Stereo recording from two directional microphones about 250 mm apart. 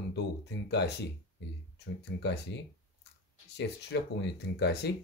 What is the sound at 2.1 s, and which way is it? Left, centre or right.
Speech, left.